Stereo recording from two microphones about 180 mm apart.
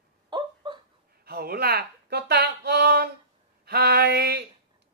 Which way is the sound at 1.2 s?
60° right (ahead or behind).